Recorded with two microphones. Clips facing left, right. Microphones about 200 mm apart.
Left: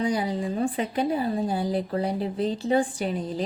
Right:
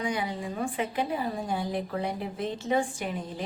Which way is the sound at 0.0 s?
35° left (ahead or behind).